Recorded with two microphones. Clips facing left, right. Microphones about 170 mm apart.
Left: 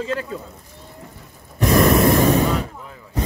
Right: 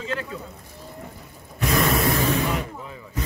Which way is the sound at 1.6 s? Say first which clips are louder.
Left 7 dB; 40° left (ahead or behind).